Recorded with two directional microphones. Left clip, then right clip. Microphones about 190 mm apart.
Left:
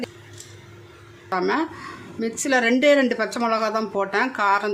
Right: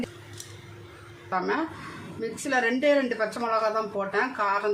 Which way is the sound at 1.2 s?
50° left (ahead or behind).